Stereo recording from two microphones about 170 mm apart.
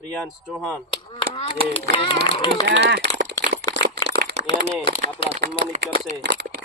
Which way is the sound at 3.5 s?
75° right (ahead or behind).